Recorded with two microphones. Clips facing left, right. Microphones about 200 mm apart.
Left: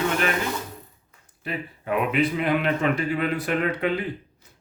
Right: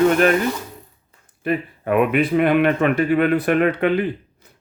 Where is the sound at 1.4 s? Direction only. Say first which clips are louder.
Right 9 dB; 55° right (ahead or behind).